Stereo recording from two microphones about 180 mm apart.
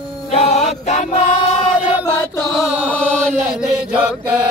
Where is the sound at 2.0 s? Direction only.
10° left (ahead or behind).